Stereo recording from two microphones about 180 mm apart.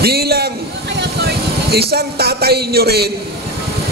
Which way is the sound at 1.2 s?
60° right (ahead or behind).